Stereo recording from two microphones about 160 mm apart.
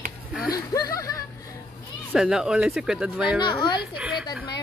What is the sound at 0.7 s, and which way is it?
Speech, 20° left (ahead or behind).